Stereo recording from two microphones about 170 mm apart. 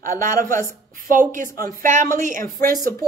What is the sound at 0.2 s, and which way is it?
Speech, 50° right (ahead or behind).